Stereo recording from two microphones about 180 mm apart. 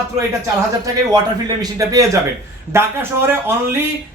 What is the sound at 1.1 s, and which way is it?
A man's voice, 20° right (ahead or behind).